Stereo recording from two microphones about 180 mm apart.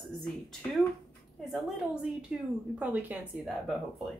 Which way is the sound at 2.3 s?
5° right (ahead or behind).